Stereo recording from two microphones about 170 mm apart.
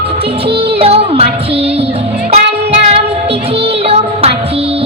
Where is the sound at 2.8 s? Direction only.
35° right (ahead or behind).